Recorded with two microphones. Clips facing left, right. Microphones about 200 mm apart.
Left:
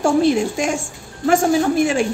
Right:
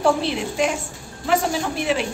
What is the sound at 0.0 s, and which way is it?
A woman's voice, 45° left (ahead or behind).